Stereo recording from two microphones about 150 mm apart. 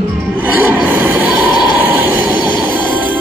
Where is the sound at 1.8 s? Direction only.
10° right (ahead or behind).